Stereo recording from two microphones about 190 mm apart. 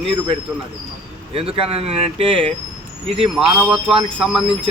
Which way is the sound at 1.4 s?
30° right (ahead or behind).